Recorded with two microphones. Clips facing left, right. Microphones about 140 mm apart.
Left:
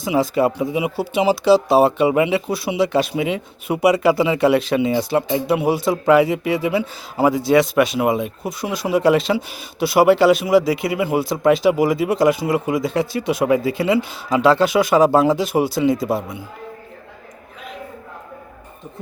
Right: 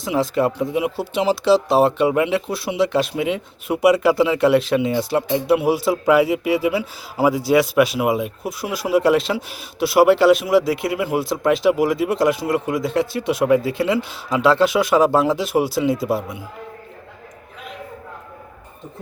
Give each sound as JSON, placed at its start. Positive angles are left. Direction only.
{"t": 0.0, "sound": "speech", "side_deg": 0}